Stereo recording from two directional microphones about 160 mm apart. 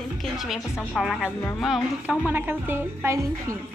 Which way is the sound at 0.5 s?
Centre (ahead or behind).